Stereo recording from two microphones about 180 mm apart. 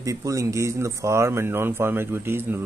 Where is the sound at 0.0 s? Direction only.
15° right (ahead or behind).